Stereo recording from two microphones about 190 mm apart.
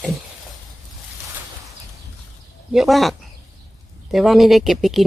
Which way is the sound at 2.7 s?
Centre (ahead or behind).